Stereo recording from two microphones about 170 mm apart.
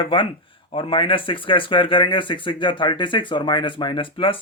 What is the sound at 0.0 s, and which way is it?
Speech, 30° left (ahead or behind).